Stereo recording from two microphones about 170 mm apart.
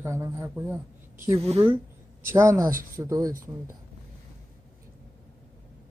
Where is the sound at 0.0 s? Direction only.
15° right (ahead or behind).